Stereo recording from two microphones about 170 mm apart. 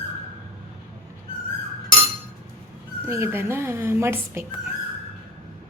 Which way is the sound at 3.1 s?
15° right (ahead or behind).